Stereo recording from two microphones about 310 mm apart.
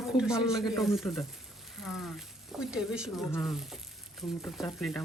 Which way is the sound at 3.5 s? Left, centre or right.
Centre.